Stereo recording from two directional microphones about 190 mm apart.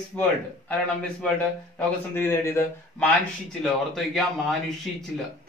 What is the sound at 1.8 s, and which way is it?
Speech, 10° left (ahead or behind).